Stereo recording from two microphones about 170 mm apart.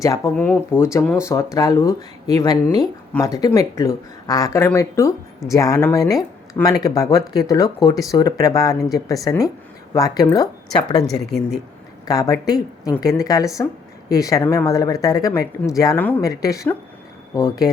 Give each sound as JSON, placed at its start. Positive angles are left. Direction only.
{"t": 0.0, "sound": "speech", "side_deg": 20}
{"t": 11.3, "sound": "speech", "side_deg": 85}
{"t": 12.0, "sound": "speech", "side_deg": 20}